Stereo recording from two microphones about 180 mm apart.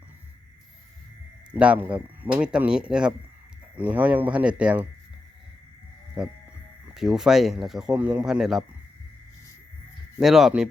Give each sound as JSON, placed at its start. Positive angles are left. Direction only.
{"t": 1.5, "sound": "speech", "side_deg": -5}
{"t": 6.2, "sound": "speech", "side_deg": -5}
{"t": 10.2, "sound": "speech", "side_deg": 0}